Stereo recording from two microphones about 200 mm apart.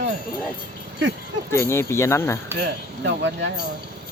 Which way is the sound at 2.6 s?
65° right (ahead or behind).